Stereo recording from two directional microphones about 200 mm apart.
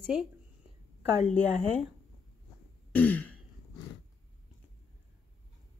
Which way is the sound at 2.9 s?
10° left (ahead or behind).